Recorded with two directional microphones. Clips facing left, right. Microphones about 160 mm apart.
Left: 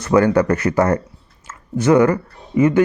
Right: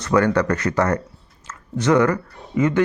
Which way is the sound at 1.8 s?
25° left (ahead or behind).